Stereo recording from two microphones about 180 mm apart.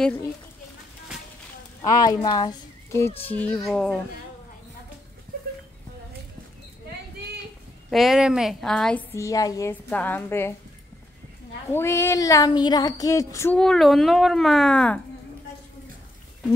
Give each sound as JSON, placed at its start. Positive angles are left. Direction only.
{"t": 0.0, "sound": "female singing", "side_deg": 10}
{"t": 1.8, "sound": "speech", "side_deg": 20}
{"t": 3.3, "sound": "female singing", "side_deg": 10}
{"t": 7.9, "sound": "speech", "side_deg": 0}
{"t": 9.1, "sound": "female singing", "side_deg": 15}
{"t": 11.7, "sound": "female singing", "side_deg": 15}
{"t": 13.6, "sound": "speech", "side_deg": 0}